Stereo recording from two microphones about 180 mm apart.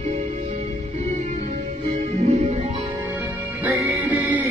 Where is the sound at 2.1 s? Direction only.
40° right (ahead or behind).